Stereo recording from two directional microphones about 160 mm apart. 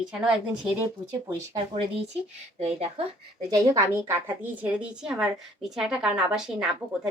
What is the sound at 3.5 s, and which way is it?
A woman's voice, 20° right (ahead or behind).